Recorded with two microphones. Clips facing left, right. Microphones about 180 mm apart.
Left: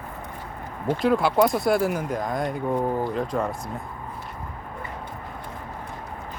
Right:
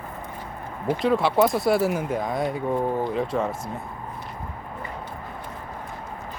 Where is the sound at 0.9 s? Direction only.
Centre (ahead or behind).